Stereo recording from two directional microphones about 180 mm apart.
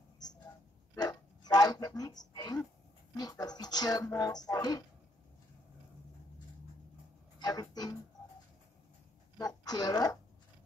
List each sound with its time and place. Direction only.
0.9 s a sound: 20° left (ahead or behind)
3.2 s speech: 20° left (ahead or behind)
7.3 s speech: 20° left (ahead or behind)
9.4 s speech: 20° left (ahead or behind)